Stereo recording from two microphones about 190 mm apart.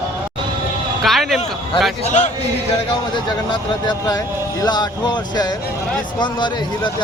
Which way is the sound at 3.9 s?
20° left (ahead or behind).